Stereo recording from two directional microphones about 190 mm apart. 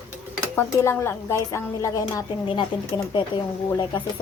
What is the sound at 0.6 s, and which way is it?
A woman's voice, 15° left (ahead or behind).